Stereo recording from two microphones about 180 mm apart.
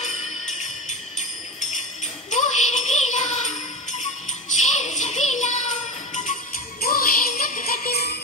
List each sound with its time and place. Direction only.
0.0 s music: 40° left (ahead or behind)
4.6 s music: 40° left (ahead or behind)
6.8 s music: 55° left (ahead or behind)